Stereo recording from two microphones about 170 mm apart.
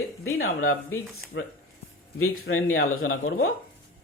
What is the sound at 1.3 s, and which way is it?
Speech, 90° left.